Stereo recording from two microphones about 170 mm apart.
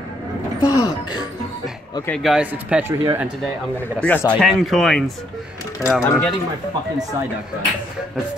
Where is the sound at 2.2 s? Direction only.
5° right (ahead or behind).